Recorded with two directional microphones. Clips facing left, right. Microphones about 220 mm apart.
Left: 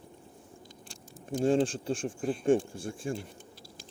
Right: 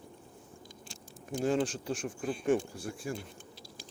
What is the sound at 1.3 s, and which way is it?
Speech, 30° left (ahead or behind).